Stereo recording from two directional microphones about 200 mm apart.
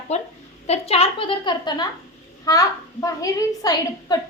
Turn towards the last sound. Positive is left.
turn(degrees=20)  # may be behind; listen again after turning